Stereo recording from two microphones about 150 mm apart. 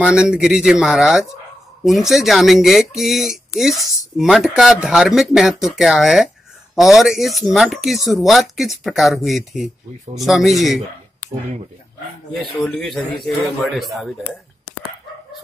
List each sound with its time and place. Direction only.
0.0 s speech: 5° right (ahead or behind)
12.4 s speech: centre (ahead or behind)